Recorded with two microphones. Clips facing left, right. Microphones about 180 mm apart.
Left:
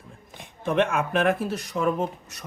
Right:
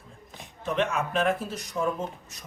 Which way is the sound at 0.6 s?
55° left (ahead or behind).